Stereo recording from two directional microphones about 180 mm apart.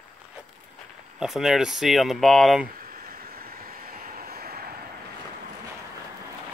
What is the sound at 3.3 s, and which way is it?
Vehicle, 55° right (ahead or behind).